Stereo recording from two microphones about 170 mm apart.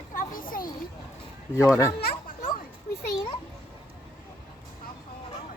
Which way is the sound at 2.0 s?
60° left (ahead or behind).